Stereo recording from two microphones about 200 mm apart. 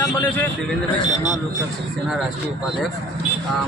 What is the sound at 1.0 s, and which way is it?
Speech, 35° right (ahead or behind).